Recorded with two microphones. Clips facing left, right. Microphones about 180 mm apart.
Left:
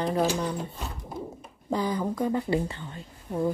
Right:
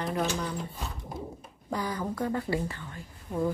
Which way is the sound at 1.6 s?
20° left (ahead or behind).